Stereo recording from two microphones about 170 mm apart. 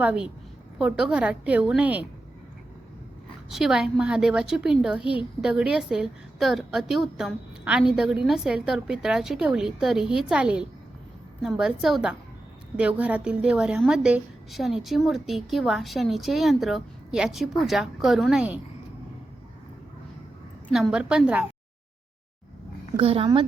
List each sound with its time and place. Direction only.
0.0 s a woman's voice: 5° right (ahead or behind)
3.5 s a woman's voice: 5° right (ahead or behind)
20.7 s a woman's voice: centre (ahead or behind)
23.0 s a woman's voice: 30° right (ahead or behind)